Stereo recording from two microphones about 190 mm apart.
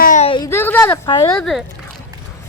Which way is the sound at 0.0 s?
45° left (ahead or behind).